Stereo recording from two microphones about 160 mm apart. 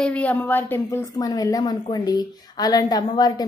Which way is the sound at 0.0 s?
10° left (ahead or behind).